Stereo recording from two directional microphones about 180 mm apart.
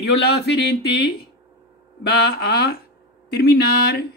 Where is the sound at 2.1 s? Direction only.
60° left (ahead or behind).